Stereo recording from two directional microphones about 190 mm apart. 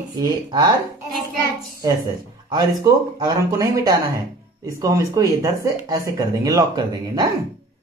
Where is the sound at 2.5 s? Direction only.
20° right (ahead or behind).